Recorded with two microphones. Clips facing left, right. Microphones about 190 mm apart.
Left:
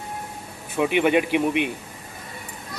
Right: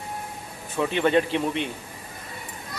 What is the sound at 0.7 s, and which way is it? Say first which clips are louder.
Speech: left 2 dB; 15° left (ahead or behind).